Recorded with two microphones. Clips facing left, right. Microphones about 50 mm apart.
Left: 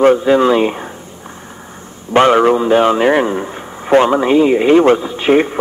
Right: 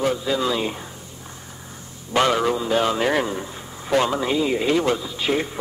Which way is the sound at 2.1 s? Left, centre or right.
Left.